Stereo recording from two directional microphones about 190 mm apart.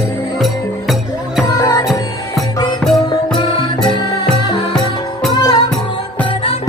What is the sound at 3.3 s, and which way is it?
Music, 20° left (ahead or behind).